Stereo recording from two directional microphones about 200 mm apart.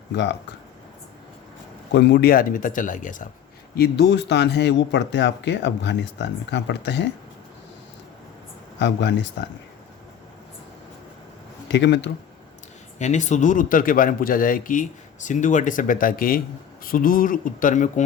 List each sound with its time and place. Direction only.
1.9 s speech: 60° left (ahead or behind); by 3.2 s 40° left (ahead or behind)
3.8 s speech: 55° left (ahead or behind)
8.8 s speech: 60° left (ahead or behind)
11.7 s speech: 60° left (ahead or behind)
13.0 s speech: 35° left (ahead or behind)